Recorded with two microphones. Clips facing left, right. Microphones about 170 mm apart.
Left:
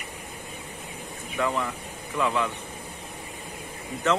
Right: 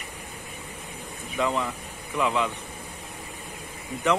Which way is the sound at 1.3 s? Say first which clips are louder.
Right 1 dB; 15° right (ahead or behind).